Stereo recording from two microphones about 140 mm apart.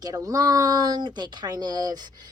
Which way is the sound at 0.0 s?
25° right (ahead or behind).